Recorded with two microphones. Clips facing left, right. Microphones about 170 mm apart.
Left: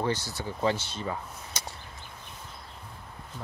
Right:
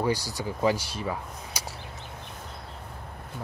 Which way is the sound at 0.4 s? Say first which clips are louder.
Right 3 dB; 10° right (ahead or behind).